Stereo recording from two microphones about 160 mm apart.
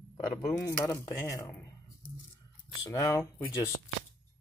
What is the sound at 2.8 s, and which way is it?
Speech, 20° left (ahead or behind).